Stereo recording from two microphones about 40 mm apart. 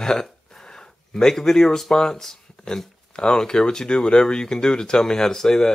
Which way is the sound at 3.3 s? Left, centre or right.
Centre.